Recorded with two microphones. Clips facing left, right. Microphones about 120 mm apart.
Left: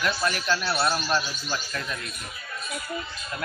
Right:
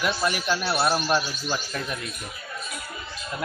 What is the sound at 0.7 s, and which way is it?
A man's voice, 20° right (ahead or behind).